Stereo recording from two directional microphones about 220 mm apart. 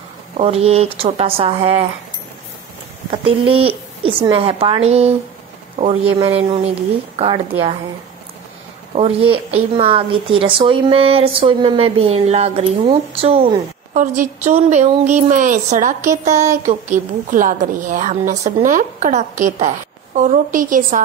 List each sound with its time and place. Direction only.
0.4 s speech: 25° right (ahead or behind)
3.1 s speech: 25° right (ahead or behind)
8.9 s speech: 25° right (ahead or behind)
13.9 s a woman's voice: 35° right (ahead or behind)